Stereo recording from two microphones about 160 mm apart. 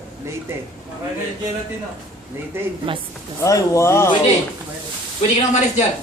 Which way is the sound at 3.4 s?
20° left (ahead or behind).